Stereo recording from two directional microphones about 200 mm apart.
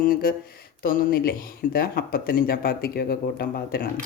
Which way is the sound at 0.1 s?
45° left (ahead or behind).